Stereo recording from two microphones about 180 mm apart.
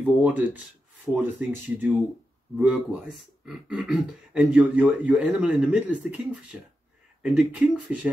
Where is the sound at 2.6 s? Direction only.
5° right (ahead or behind).